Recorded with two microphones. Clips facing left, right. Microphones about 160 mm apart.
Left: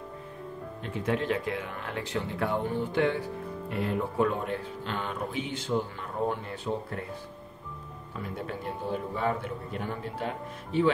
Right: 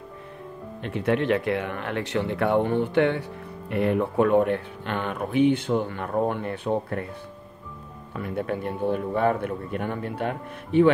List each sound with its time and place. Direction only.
0.8 s speech: 70° right (ahead or behind)
8.2 s speech: 60° right (ahead or behind)